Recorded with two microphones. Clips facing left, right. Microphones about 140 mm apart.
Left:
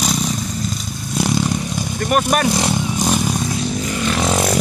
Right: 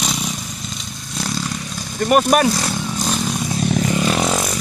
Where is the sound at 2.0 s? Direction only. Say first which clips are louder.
Right 3 dB; 10° right (ahead or behind).